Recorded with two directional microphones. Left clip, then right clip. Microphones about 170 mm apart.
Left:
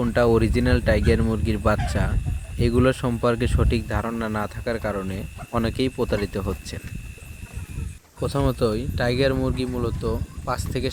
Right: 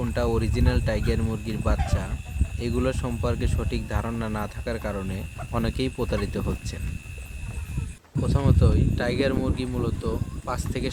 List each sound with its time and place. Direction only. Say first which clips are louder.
0.0 s speech: left 7 dB; 30° left (ahead or behind)
8.2 s speech: left 4 dB; 30° left (ahead or behind)